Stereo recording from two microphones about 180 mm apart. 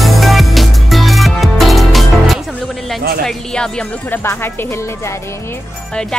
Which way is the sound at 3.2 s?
5° left (ahead or behind).